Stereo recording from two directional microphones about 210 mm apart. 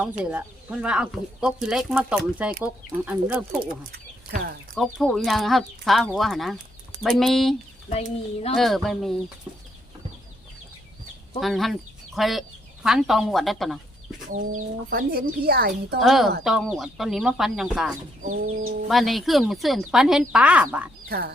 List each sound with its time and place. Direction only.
0.3 s speech: 5° right (ahead or behind)
3.7 s chicken: 50° right (ahead or behind)
4.7 s speech: centre (ahead or behind)
7.9 s speech: 30° left (ahead or behind)
8.5 s speech: centre (ahead or behind)
11.3 s speech: centre (ahead or behind)
14.3 s speech: 40° right (ahead or behind)
16.0 s speech: centre (ahead or behind)
21.1 s speech: 50° right (ahead or behind)